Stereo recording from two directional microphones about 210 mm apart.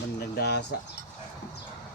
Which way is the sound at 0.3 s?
50° left (ahead or behind).